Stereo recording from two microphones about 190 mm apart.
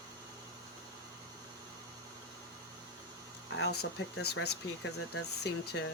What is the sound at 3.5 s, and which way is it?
Speech, 60° left (ahead or behind).